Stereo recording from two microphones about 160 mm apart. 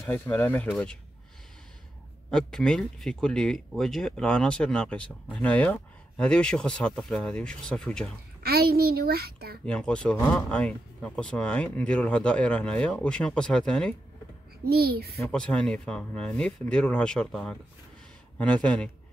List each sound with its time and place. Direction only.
0.0 s speech: 15° left (ahead or behind)
2.3 s speech: 5° left (ahead or behind)
8.4 s a child's voice: 75° right (ahead or behind)
9.7 s speech: 5° left (ahead or behind)
14.7 s a child's voice: 75° right (ahead or behind)
15.1 s speech: 5° left (ahead or behind)